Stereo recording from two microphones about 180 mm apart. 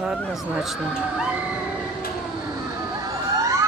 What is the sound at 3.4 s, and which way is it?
Emergency vehicle, 15° right (ahead or behind).